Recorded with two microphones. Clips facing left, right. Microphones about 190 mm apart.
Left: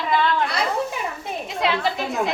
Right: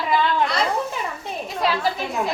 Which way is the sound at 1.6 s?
20° left (ahead or behind).